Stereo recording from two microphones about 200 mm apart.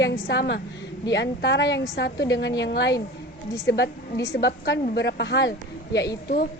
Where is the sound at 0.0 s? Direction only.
60° left (ahead or behind).